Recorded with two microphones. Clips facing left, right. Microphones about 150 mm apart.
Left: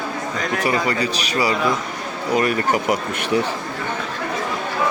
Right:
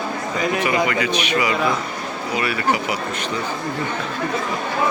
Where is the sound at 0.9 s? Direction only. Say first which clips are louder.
Right 1 dB; 35° left (ahead or behind).